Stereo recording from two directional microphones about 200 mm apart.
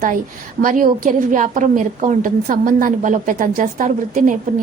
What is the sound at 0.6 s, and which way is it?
A woman's voice, 40° right (ahead or behind).